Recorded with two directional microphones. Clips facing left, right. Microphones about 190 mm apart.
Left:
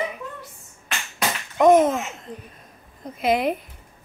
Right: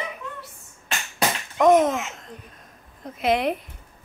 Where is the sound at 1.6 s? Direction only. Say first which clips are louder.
Left 2 dB; centre (ahead or behind).